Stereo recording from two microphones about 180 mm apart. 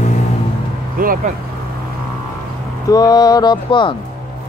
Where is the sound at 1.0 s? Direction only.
50° right (ahead or behind).